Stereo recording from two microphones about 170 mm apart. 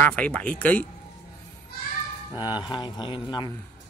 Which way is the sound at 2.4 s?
25° left (ahead or behind).